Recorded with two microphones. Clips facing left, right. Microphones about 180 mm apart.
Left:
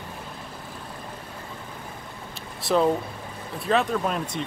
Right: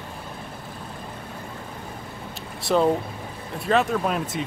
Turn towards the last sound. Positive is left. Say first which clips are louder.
# right 2 dB
turn(degrees=-5)  # may be behind; listen again after turning